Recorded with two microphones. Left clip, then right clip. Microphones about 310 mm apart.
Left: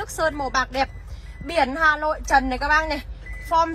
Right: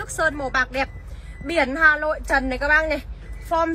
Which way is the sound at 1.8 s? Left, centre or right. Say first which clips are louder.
Right 2 dB; centre.